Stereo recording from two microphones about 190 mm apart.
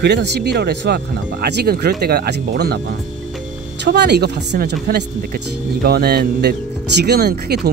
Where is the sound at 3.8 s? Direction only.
60° right (ahead or behind).